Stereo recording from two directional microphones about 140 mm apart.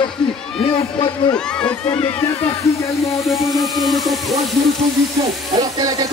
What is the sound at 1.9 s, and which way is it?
Speech, 40° left (ahead or behind).